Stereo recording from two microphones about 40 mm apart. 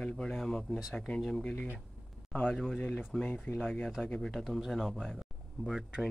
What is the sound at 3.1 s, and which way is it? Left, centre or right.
Speech, centre.